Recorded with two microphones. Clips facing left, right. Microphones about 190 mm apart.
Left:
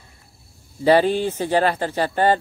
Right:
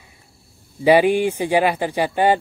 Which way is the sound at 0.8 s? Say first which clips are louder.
Right 2 dB; 10° right (ahead or behind).